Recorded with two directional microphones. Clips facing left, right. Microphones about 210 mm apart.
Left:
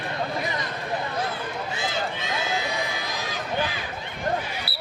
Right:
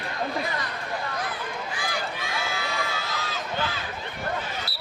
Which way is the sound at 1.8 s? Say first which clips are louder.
Left 3 dB; 25° left (ahead or behind).